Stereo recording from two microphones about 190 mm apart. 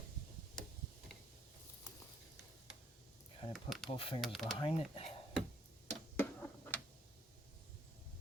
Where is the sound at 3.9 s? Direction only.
30° left (ahead or behind).